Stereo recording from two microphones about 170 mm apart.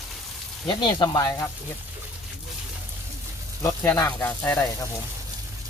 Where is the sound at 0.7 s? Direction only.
25° left (ahead or behind).